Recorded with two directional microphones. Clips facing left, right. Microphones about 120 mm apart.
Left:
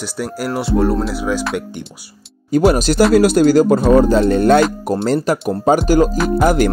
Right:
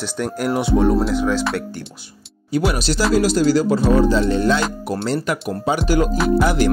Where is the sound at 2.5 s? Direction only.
45° left (ahead or behind).